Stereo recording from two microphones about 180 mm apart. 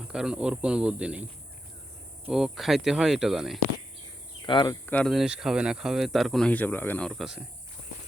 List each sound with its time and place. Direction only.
0.1 s speech: 5° right (ahead or behind)
2.2 s speech: 5° right (ahead or behind)
4.4 s speech: 25° left (ahead or behind)
4.9 s speech: 5° left (ahead or behind)